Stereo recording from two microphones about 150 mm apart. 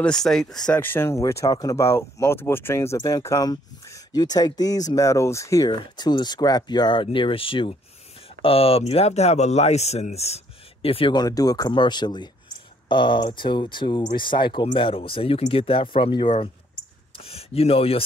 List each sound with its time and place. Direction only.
0.0 s speech: 5° left (ahead or behind); by 18.0 s 40° left (ahead or behind)